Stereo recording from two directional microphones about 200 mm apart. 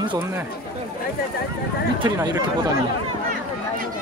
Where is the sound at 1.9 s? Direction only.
20° right (ahead or behind).